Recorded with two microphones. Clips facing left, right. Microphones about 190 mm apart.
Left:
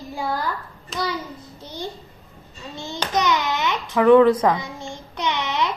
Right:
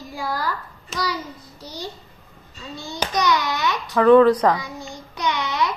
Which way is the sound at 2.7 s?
25° left (ahead or behind).